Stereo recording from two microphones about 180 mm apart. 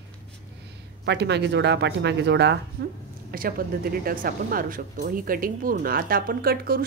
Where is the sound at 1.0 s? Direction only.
70° right (ahead or behind).